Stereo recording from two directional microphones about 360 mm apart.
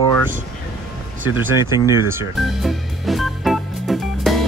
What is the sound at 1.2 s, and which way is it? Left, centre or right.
Speech, centre.